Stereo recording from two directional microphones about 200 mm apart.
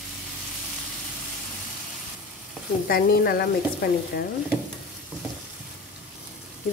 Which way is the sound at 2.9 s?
50° left (ahead or behind).